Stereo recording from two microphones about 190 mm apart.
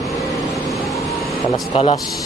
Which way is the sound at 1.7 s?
30° left (ahead or behind).